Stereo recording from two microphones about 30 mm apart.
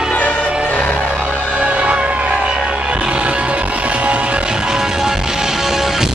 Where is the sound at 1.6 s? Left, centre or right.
Right.